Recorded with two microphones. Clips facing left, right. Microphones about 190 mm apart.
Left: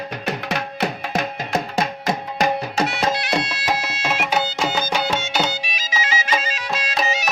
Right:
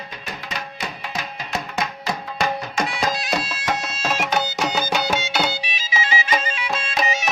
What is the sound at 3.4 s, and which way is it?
Music, 65° left (ahead or behind).